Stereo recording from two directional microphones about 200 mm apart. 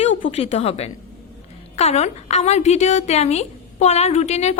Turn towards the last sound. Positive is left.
turn(degrees=35)  # may be behind; listen again after turning